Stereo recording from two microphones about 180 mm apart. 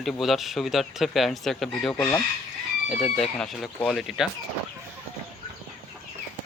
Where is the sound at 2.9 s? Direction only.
Centre (ahead or behind).